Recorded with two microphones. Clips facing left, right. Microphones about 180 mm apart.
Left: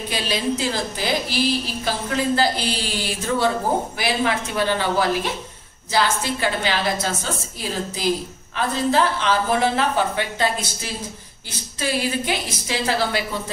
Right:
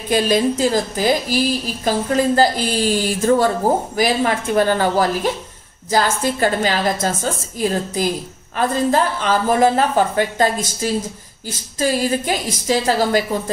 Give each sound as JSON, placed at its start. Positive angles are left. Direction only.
{"t": 0.1, "sound": "a woman's voice", "side_deg": -45}
{"t": 8.5, "sound": "a woman's voice", "side_deg": -45}